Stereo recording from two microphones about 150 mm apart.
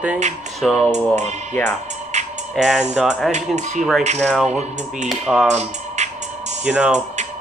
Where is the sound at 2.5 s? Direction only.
5° right (ahead or behind).